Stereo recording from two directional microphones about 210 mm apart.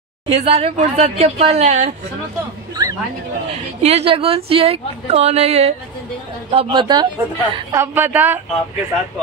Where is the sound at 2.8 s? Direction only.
20° right (ahead or behind).